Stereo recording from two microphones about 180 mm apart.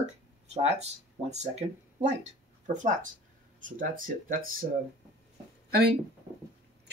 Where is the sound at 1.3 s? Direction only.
40° right (ahead or behind).